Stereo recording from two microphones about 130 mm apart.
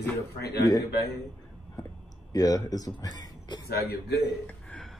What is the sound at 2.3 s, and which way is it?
Speech, 30° left (ahead or behind).